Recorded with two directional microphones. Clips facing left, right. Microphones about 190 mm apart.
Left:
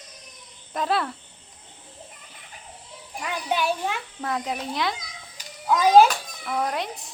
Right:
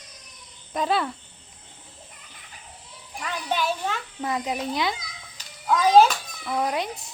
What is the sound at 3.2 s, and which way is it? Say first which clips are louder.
Speech: left 1 dB; 10° left (ahead or behind).